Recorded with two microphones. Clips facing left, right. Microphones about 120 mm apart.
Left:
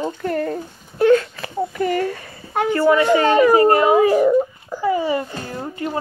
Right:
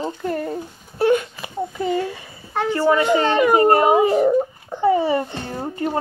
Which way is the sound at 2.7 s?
25° right (ahead or behind).